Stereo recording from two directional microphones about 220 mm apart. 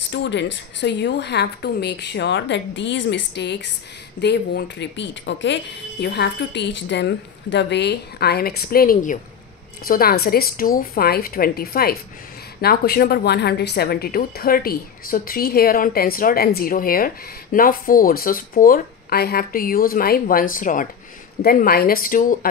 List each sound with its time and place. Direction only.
0.1 s a woman's voice: 55° left (ahead or behind)